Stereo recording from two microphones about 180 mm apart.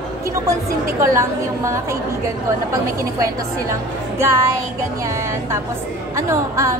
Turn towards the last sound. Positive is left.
turn(degrees=-15)  # may be behind; listen again after turning